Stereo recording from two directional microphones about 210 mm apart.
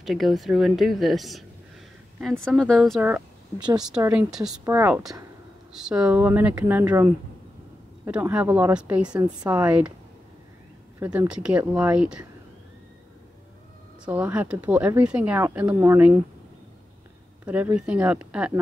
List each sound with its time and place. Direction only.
0.0 s a woman's voice: centre (ahead or behind)
3.5 s a woman's voice: 20° right (ahead or behind)
4.0 s speech: 5° right (ahead or behind)
5.7 s speech: 5° right (ahead or behind)
9.1 s a woman's voice: 20° right (ahead or behind)
9.5 s a woman's voice: 5° right (ahead or behind)
11.0 s a woman's voice: 5° right (ahead or behind)
14.0 s speech: 5° right (ahead or behind)
17.5 s a woman's voice: 5° right (ahead or behind)